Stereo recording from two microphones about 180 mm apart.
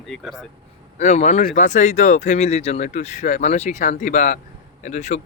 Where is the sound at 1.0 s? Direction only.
40° left (ahead or behind).